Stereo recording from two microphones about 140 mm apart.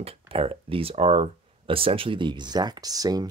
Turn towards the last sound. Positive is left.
turn(degrees=-25)  # may be behind; listen again after turning